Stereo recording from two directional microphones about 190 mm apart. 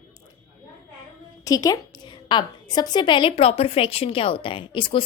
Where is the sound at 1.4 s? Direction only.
20° left (ahead or behind).